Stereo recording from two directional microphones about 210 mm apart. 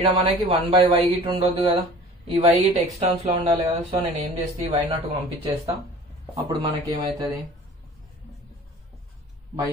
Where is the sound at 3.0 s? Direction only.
30° right (ahead or behind).